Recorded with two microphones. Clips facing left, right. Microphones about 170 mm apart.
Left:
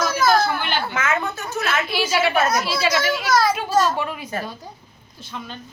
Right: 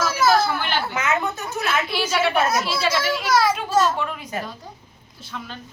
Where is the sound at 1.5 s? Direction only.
Centre (ahead or behind).